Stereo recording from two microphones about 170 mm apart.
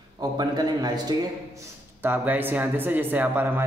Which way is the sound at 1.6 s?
10° right (ahead or behind).